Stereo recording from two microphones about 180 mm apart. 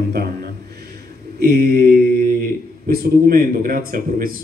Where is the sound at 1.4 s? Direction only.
55° right (ahead or behind).